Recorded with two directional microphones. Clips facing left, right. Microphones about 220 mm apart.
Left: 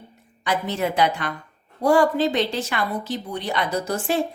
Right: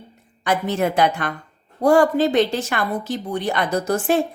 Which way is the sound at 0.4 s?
50° right (ahead or behind).